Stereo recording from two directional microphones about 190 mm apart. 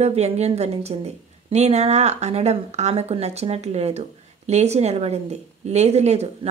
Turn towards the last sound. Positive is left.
turn(degrees=-35)  # may be behind; listen again after turning